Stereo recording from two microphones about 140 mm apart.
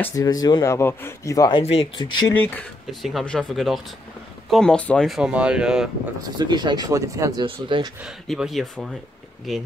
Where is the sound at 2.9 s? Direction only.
Centre (ahead or behind).